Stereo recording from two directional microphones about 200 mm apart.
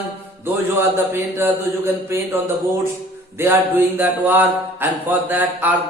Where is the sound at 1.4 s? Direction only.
10° right (ahead or behind).